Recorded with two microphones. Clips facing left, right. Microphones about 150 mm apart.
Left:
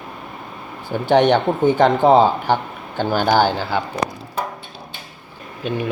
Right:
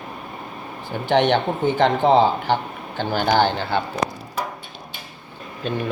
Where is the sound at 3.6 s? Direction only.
20° right (ahead or behind).